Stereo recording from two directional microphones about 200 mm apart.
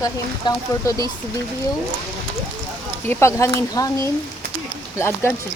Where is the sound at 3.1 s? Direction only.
15° left (ahead or behind).